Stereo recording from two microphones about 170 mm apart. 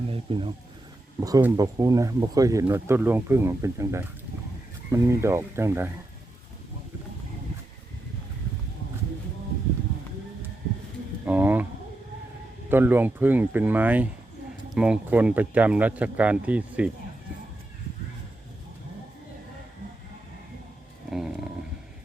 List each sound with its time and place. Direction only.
0.1 s speech: 30° right (ahead or behind)
1.2 s speech: 15° right (ahead or behind)
11.3 s bird: 10° right (ahead or behind)
12.6 s speech: 15° right (ahead or behind)
21.1 s dog: 5° right (ahead or behind)